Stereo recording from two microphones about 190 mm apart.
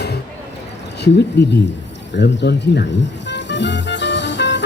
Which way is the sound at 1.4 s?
60° left (ahead or behind).